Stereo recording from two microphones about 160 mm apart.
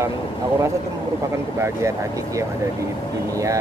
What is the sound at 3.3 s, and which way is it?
Speech, 20° right (ahead or behind).